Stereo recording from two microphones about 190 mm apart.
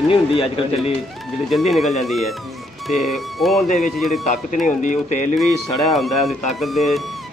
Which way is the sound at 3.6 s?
40° left (ahead or behind).